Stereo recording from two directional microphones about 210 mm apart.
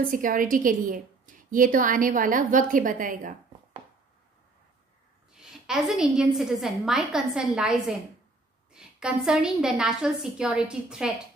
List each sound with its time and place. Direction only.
0.1 s a woman's voice: 40° right (ahead or behind)
5.3 s a woman's voice: centre (ahead or behind)